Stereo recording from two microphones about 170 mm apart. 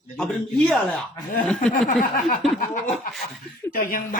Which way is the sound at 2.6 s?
50° left (ahead or behind).